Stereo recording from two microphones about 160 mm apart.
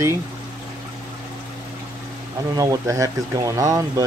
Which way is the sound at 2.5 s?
20° right (ahead or behind).